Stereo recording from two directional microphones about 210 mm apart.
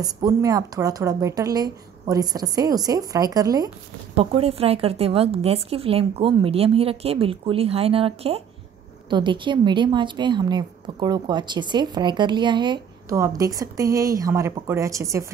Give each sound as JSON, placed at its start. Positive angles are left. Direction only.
{"t": 0.0, "sound": "speech", "side_deg": -15}
{"t": 4.1, "sound": "a woman's voice", "side_deg": -30}